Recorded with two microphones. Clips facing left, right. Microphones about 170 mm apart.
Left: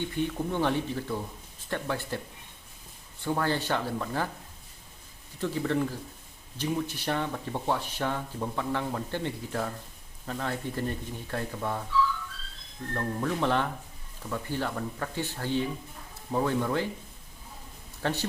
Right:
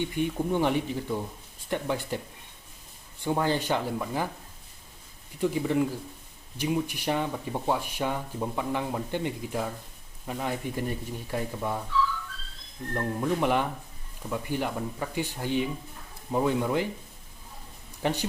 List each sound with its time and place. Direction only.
0.0 s speech: 15° right (ahead or behind)
3.2 s speech: 15° right (ahead or behind)
5.4 s speech: 15° right (ahead or behind)
12.9 s speech: 15° right (ahead or behind)
18.0 s speech: 15° right (ahead or behind)